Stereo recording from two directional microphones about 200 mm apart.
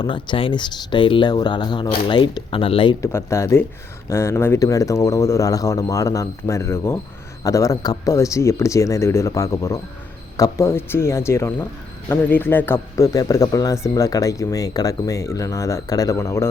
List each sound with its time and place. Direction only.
0.0 s speech: 25° left (ahead or behind)
3.0 s speech: 15° left (ahead or behind)